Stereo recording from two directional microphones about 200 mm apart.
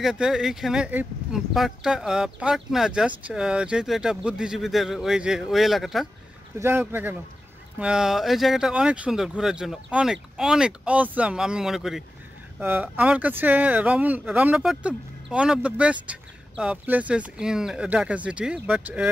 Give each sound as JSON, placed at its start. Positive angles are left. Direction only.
{"t": 0.0, "sound": "speech", "side_deg": 0}